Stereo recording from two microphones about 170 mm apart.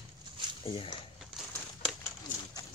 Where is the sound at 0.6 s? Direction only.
30° left (ahead or behind).